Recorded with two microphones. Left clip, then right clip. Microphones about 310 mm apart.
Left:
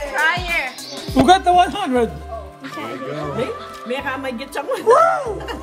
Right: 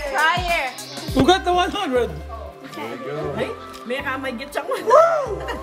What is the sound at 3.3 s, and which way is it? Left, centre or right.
Speech, centre.